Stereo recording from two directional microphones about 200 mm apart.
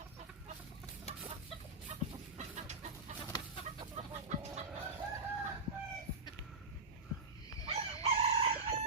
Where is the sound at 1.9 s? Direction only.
30° right (ahead or behind).